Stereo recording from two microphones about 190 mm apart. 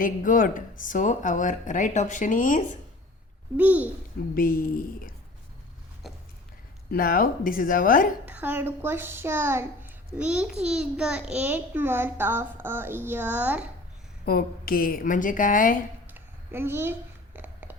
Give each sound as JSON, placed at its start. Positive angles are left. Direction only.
{"t": 0.0, "sound": "speech", "side_deg": 45}
{"t": 3.6, "sound": "a child's voice", "side_deg": -10}
{"t": 4.4, "sound": "speech", "side_deg": 45}
{"t": 6.9, "sound": "speech", "side_deg": 45}
{"t": 8.2, "sound": "a child's voice", "side_deg": -10}
{"t": 14.3, "sound": "speech", "side_deg": 50}
{"t": 16.0, "sound": "a sound", "side_deg": -10}